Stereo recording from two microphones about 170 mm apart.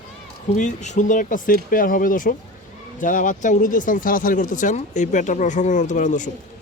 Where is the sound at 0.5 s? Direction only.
45° left (ahead or behind).